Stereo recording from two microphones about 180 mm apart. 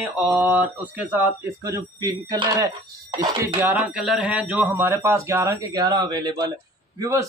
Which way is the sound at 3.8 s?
Centre (ahead or behind).